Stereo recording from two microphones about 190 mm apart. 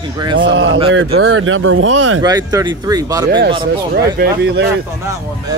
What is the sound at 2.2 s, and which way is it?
Speech, 20° right (ahead or behind).